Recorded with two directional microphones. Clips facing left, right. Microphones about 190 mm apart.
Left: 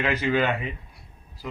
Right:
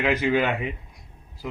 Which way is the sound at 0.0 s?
15° right (ahead or behind).